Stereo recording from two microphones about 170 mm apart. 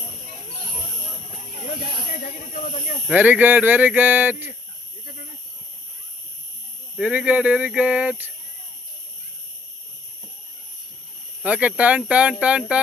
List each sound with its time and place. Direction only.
2.2 s speech: 50° left (ahead or behind)
3.1 s speech: 10° right (ahead or behind)
6.9 s speech: 5° right (ahead or behind)
11.4 s speech: 10° right (ahead or behind)